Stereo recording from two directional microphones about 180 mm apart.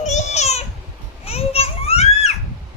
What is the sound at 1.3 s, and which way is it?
Children playing, 35° left (ahead or behind).